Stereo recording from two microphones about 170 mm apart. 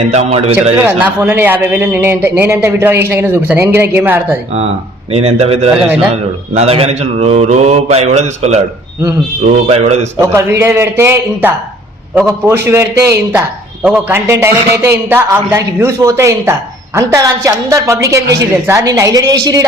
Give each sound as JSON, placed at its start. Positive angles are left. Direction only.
{"t": 0.1, "sound": "mantra", "side_deg": -40}
{"t": 0.9, "sound": "a man's voice", "side_deg": -10}
{"t": 5.1, "sound": "mantra", "side_deg": -35}
{"t": 10.2, "sound": "a man's voice", "side_deg": -15}